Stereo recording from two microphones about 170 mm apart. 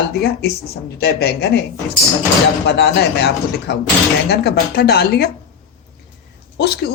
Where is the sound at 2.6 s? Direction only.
70° left (ahead or behind).